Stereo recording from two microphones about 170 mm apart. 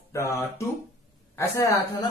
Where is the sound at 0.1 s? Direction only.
15° left (ahead or behind).